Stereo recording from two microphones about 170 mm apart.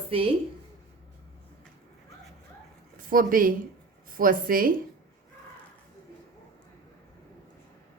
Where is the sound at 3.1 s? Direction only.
55° right (ahead or behind).